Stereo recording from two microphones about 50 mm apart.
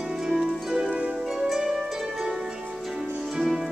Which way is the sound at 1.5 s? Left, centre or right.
Centre.